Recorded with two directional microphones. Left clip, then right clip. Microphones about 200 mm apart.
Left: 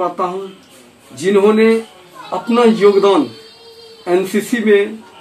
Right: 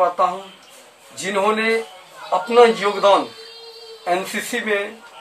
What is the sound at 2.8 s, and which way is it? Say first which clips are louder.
Speech: left 5 dB; 15° right (ahead or behind).